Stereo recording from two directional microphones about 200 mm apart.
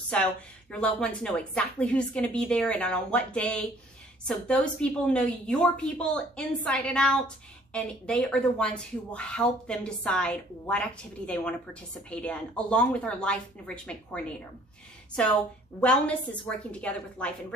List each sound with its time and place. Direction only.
0.1 s speech: 5° left (ahead or behind)
15.8 s speech: 5° left (ahead or behind)